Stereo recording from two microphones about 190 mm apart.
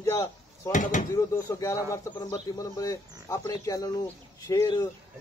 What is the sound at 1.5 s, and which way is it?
Speech, 15° left (ahead or behind).